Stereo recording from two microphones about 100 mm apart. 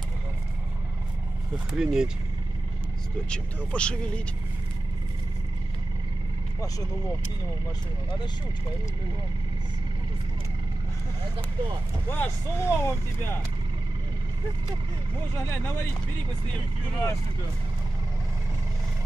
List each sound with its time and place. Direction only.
1.8 s speech: 5° right (ahead or behind)
3.3 s speech: 10° left (ahead or behind)
12.1 s speech: 25° left (ahead or behind)